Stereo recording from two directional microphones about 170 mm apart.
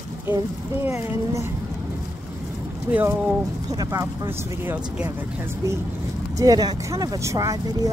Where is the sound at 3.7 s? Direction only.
20° right (ahead or behind).